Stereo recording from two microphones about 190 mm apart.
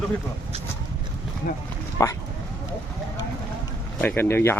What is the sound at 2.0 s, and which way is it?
Speech, 15° left (ahead or behind).